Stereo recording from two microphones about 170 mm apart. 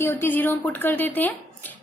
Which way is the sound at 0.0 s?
15° left (ahead or behind).